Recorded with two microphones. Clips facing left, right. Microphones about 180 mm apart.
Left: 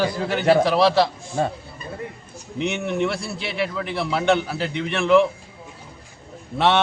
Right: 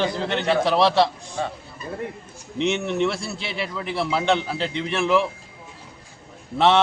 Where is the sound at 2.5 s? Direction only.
Centre (ahead or behind).